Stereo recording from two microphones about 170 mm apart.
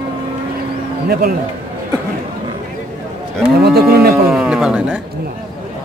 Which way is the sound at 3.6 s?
65° right (ahead or behind).